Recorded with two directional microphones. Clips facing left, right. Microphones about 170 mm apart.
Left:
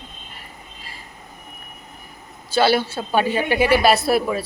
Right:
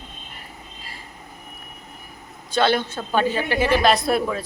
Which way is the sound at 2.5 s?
5° left (ahead or behind).